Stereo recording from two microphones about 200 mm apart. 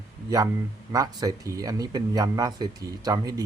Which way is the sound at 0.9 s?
20° right (ahead or behind).